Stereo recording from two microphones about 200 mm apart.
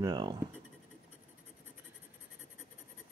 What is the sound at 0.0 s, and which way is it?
Speech, 20° right (ahead or behind).